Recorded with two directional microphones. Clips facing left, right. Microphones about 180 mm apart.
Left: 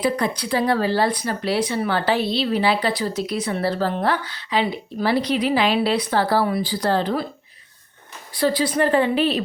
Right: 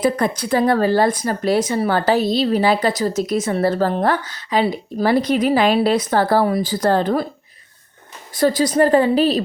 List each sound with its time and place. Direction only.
0.0 s speech: 50° right (ahead or behind)
8.4 s speech: 45° right (ahead or behind)